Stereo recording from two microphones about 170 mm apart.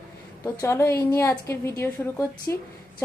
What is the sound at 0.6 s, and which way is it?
A woman's voice, 15° left (ahead or behind).